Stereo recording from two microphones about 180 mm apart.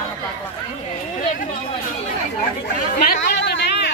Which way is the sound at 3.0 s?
60° left (ahead or behind).